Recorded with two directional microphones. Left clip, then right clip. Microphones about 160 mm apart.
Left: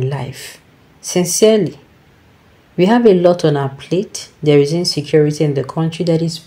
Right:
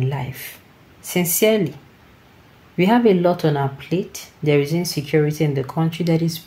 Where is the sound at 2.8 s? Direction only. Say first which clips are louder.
Left 5 dB; 20° left (ahead or behind).